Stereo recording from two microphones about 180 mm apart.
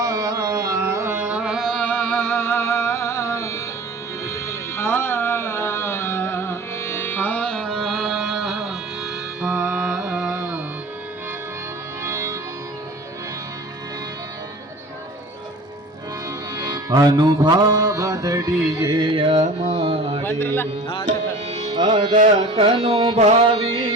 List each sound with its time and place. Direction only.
0.0 s carnatic music: 20° right (ahead or behind); by 3.6 s 15° left (ahead or behind)
4.4 s music: 15° left (ahead or behind); by 10.6 s 5° right (ahead or behind)
12.0 s music: 15° right (ahead or behind)
16.6 s music: 20° right (ahead or behind)
20.2 s speech: 10° left (ahead or behind)
21.1 s tabla: 40° right (ahead or behind)
21.7 s music: 25° right (ahead or behind)